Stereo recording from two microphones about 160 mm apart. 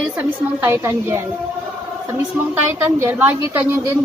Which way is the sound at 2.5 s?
15° right (ahead or behind).